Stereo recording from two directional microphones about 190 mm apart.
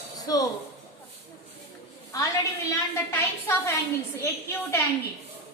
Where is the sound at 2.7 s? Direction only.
15° left (ahead or behind).